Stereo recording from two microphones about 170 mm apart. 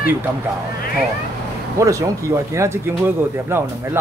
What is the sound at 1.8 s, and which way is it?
Speech, 20° right (ahead or behind).